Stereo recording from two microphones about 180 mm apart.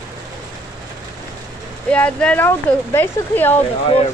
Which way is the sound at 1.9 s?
5° left (ahead or behind).